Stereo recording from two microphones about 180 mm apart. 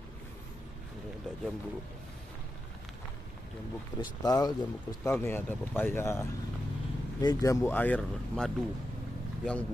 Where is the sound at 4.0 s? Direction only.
20° left (ahead or behind); by 8.5 s 5° left (ahead or behind).